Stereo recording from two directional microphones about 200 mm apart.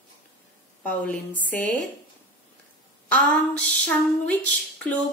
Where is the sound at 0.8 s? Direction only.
5° left (ahead or behind).